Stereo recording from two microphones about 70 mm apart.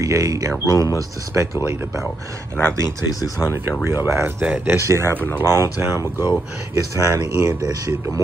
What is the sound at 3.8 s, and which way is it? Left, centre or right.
Speech, right.